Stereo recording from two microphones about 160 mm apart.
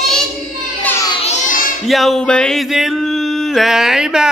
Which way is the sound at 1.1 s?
40° left (ahead or behind).